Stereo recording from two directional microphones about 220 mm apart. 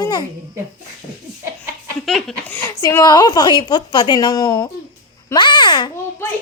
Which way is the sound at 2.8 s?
15° left (ahead or behind).